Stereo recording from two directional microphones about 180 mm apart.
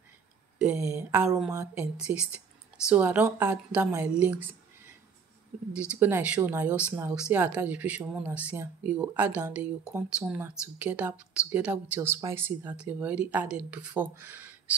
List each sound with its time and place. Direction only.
0.8 s speech: 10° right (ahead or behind)
1.5 s speech: 15° right (ahead or behind)
2.0 s speech: 5° right (ahead or behind)
5.7 s speech: 5° right (ahead or behind)